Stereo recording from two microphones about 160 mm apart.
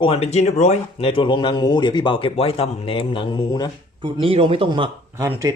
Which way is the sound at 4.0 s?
35° right (ahead or behind).